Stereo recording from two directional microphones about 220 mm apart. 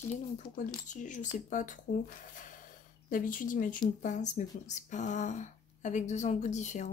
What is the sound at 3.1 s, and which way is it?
Speech, 35° left (ahead or behind).